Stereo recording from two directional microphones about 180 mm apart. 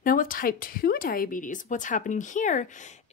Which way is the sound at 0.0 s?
50° left (ahead or behind).